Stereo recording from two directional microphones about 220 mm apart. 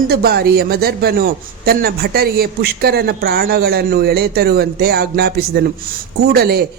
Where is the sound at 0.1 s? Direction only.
45° right (ahead or behind).